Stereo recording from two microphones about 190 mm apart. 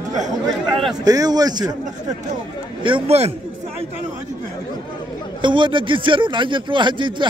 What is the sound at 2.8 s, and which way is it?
Speech, 30° right (ahead or behind).